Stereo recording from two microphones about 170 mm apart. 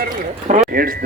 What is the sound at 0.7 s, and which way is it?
Speech, 55° right (ahead or behind).